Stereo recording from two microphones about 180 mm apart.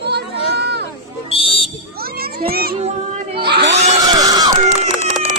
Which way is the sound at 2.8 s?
35° right (ahead or behind).